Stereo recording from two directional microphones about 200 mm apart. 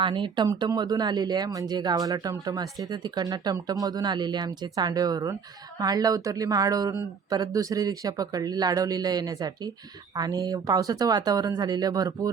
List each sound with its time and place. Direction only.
0.0 s speech: 25° right (ahead or behind)